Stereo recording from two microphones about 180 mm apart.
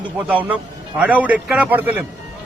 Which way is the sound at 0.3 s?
10° right (ahead or behind).